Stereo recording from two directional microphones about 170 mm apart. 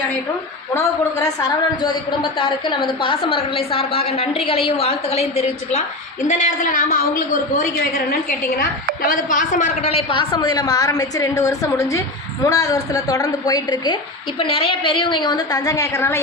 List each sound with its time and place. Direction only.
0.7 s a woman's voice: 20° left (ahead or behind); by 5.8 s 35° left (ahead or behind)
6.2 s a woman's voice: 50° left (ahead or behind); by 16.2 s 15° left (ahead or behind)